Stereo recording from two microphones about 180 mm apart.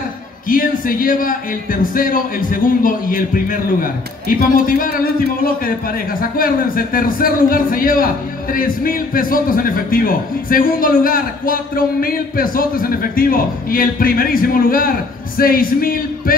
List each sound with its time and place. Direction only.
0.5 s speech: 50° left (ahead or behind)